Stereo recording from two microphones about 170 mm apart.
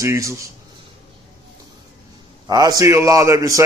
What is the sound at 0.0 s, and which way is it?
Speech, 15° right (ahead or behind).